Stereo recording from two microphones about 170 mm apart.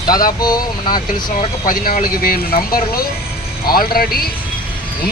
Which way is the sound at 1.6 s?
55° left (ahead or behind).